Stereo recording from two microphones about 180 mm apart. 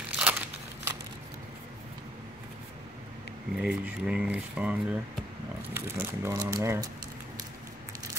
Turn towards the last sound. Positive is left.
turn(degrees=-15)  # may be behind; listen again after turning